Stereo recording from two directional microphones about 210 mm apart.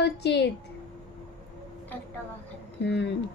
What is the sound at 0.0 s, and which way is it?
Speech, 55° left (ahead or behind).